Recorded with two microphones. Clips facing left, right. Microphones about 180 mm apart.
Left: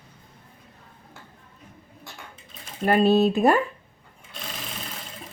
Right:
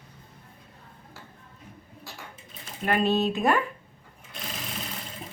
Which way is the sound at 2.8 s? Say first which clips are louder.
Left 6 dB; 35° left (ahead or behind).